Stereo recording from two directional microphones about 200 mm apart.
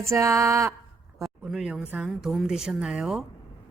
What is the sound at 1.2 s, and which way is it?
Speech, centre (ahead or behind).